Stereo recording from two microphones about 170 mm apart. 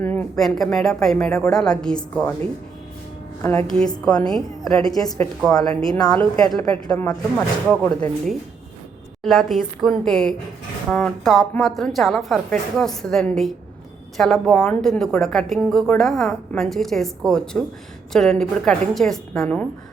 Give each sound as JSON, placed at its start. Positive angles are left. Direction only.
{"t": 0.0, "sound": "a woman's voice", "side_deg": 10}
{"t": 3.7, "sound": "a woman's voice", "side_deg": 5}
{"t": 4.9, "sound": "a woman's voice", "side_deg": 20}
{"t": 6.4, "sound": "a woman's voice", "side_deg": 5}